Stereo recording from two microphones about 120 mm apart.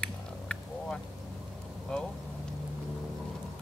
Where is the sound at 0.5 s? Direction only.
10° left (ahead or behind).